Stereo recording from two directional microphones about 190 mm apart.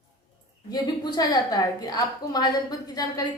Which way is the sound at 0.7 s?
20° left (ahead or behind).